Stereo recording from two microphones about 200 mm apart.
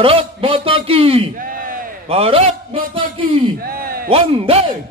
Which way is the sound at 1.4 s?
45° right (ahead or behind).